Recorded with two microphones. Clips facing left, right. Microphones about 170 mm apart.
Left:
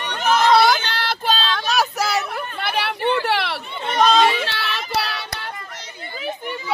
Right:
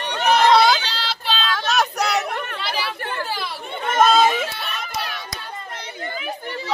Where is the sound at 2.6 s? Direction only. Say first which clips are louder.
Left 4 dB; 60° left (ahead or behind).